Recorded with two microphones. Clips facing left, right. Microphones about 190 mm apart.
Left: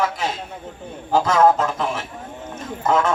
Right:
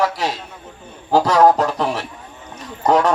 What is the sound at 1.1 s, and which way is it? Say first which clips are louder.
A man's voice: right 3 dB; 35° right (ahead or behind).